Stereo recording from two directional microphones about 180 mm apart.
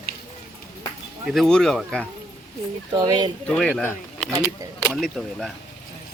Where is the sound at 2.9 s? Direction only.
25° right (ahead or behind).